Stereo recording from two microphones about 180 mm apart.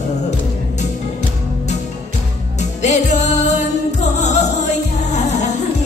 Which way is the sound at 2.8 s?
40° left (ahead or behind).